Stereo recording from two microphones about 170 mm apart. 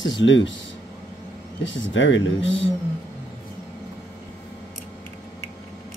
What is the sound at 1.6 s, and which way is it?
Speech, 90° left.